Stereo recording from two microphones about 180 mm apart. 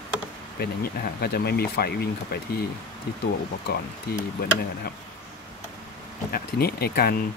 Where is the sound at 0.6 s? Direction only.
60° left (ahead or behind).